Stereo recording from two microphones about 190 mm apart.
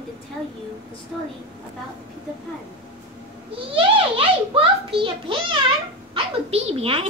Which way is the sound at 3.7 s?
30° right (ahead or behind).